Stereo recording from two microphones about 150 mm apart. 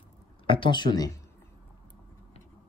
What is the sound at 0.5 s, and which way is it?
Speech, 35° left (ahead or behind).